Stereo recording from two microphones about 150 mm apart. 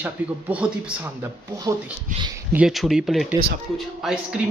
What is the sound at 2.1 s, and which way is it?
Speech, 60° right (ahead or behind).